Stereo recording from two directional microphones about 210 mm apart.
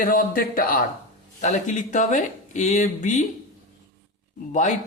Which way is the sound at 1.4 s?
35° left (ahead or behind).